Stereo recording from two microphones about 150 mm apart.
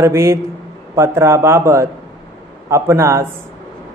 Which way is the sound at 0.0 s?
20° right (ahead or behind).